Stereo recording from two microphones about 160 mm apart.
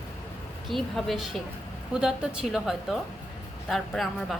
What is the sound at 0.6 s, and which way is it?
Speech, centre (ahead or behind).